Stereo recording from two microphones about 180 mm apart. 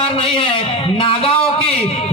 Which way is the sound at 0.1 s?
30° left (ahead or behind).